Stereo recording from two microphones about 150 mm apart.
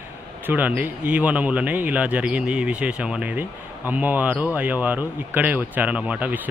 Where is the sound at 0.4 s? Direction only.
10° right (ahead or behind).